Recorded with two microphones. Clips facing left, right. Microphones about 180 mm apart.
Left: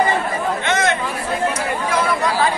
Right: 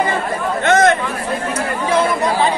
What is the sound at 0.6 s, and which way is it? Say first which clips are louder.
Chatter: right 9 dB; 45° right (ahead or behind).